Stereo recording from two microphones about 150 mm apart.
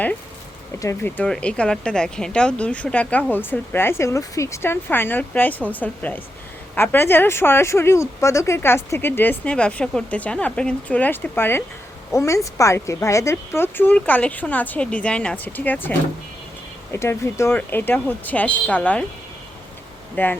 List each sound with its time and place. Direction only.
0.8 s speech: 15° left (ahead or behind)
20.2 s speech: 10° left (ahead or behind)